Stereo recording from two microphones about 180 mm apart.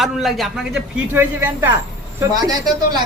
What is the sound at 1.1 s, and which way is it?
A man's voice, 10° right (ahead or behind).